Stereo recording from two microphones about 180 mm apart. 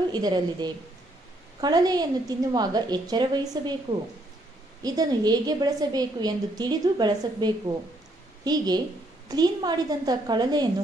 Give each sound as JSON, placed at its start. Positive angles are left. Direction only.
{"t": 0.1, "sound": "a woman's voice", "side_deg": -25}
{"t": 4.8, "sound": "a woman's voice", "side_deg": -20}